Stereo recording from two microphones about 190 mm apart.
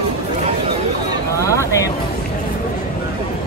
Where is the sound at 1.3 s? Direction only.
15° left (ahead or behind).